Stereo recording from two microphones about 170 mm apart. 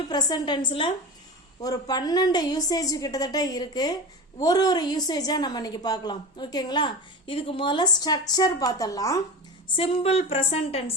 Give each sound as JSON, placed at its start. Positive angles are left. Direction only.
{"t": 0.1, "sound": "a woman's voice", "side_deg": 25}
{"t": 9.7, "sound": "a woman's voice", "side_deg": 35}